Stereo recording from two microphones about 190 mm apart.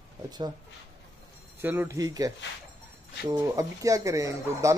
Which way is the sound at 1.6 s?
10° right (ahead or behind).